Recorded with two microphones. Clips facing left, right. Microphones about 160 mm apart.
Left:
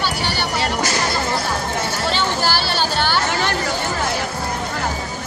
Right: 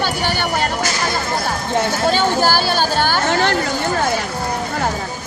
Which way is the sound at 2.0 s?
45° right (ahead or behind).